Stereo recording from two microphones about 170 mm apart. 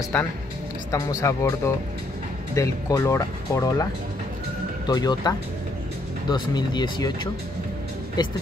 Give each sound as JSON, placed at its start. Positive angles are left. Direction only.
{"t": 0.1, "sound": "speech", "side_deg": 10}
{"t": 4.8, "sound": "speech", "side_deg": 25}